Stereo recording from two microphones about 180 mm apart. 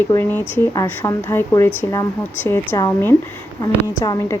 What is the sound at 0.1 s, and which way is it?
A woman's voice, 10° left (ahead or behind).